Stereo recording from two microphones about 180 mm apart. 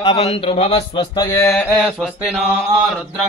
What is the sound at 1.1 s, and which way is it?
Mantra, 15° left (ahead or behind).